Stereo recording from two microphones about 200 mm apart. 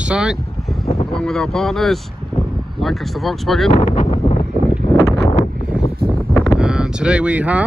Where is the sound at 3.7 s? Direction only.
35° left (ahead or behind).